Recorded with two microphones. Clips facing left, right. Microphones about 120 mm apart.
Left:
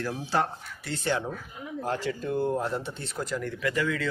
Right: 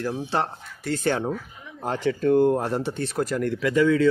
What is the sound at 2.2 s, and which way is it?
Speech, 70° right (ahead or behind).